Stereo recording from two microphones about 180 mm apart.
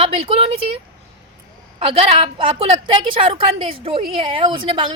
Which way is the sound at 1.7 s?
30° right (ahead or behind).